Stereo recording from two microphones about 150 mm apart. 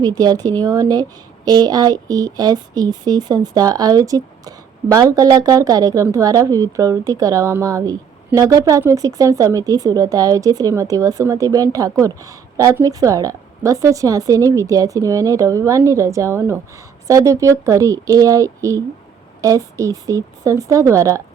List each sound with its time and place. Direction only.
0.0 s speech: 25° right (ahead or behind)